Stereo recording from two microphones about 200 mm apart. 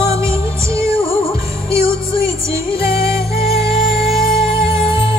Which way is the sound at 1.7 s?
15° right (ahead or behind).